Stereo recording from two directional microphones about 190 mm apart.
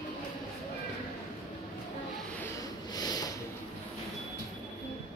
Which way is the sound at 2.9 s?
20° left (ahead or behind).